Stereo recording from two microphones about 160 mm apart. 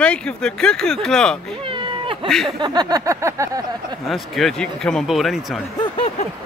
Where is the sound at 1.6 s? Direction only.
35° right (ahead or behind).